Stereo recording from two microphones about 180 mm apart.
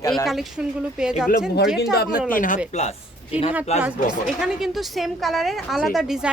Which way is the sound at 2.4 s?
45° left (ahead or behind).